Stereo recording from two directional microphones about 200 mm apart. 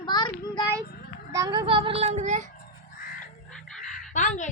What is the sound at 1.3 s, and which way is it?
A child's voice, 20° right (ahead or behind).